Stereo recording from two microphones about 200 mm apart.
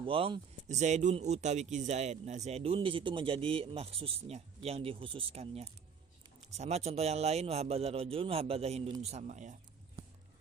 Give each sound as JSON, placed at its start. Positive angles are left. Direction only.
{"t": 0.0, "sound": "speech", "side_deg": -25}